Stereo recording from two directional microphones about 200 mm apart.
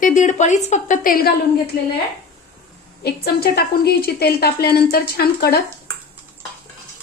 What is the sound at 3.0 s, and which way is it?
A woman's voice, 50° left (ahead or behind).